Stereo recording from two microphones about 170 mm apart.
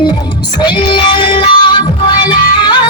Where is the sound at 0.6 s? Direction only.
25° left (ahead or behind).